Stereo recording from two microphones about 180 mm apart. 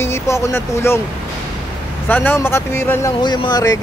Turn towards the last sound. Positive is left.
turn(degrees=20)  # may be behind; listen again after turning